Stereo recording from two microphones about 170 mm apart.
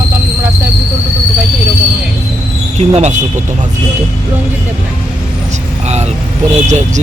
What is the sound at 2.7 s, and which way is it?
Speech, 40° right (ahead or behind).